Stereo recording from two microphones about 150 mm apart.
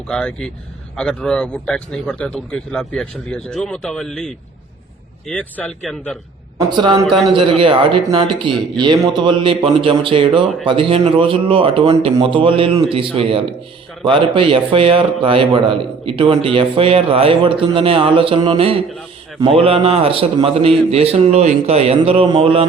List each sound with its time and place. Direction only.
0.1 s a man's voice: 5° left (ahead or behind)
6.7 s a man's voice: 30° right (ahead or behind)